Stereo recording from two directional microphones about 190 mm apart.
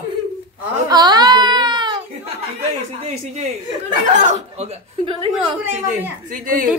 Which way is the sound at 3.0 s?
35° right (ahead or behind).